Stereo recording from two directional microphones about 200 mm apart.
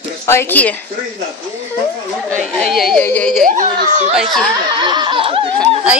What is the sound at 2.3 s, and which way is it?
A woman's voice, 5° left (ahead or behind).